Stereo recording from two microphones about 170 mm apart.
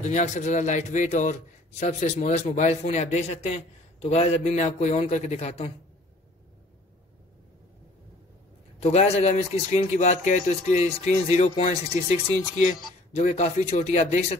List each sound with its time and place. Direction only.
0.0 s a man's voice: 45° left (ahead or behind)
8.7 s speech: 40° left (ahead or behind)